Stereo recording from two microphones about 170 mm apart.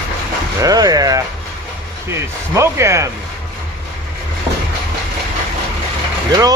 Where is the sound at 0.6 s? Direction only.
20° right (ahead or behind).